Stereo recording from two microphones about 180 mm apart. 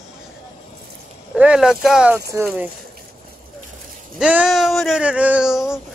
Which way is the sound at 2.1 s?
15° right (ahead or behind).